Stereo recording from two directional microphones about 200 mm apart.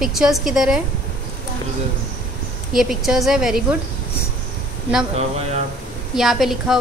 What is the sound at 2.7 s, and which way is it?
Speech, centre (ahead or behind).